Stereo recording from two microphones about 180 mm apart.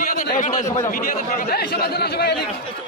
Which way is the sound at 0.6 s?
20° left (ahead or behind).